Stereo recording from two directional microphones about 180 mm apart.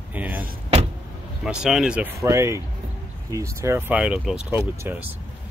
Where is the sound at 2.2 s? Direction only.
15° right (ahead or behind).